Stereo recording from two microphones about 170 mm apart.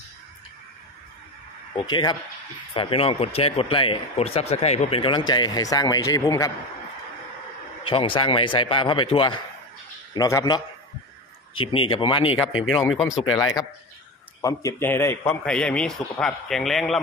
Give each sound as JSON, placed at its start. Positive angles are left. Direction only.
{"t": 1.8, "sound": "a man's voice", "side_deg": 25}
{"t": 7.8, "sound": "a man's voice", "side_deg": 30}
{"t": 10.1, "sound": "a man's voice", "side_deg": 20}
{"t": 11.5, "sound": "speech", "side_deg": 30}
{"t": 12.7, "sound": "a man's voice", "side_deg": 0}
{"t": 14.4, "sound": "a man's voice", "side_deg": 20}